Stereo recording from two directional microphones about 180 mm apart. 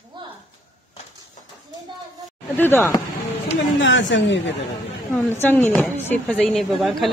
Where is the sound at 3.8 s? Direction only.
90° left.